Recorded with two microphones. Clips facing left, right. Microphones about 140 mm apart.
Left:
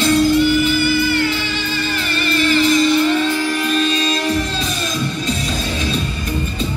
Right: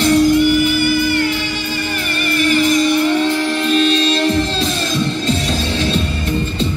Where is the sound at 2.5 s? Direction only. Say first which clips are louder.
Even; 15° right (ahead or behind).